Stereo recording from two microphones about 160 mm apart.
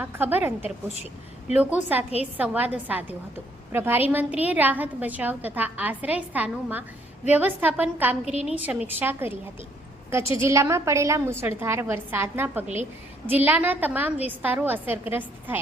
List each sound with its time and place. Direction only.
0.0 s a woman's voice: 10° right (ahead or behind)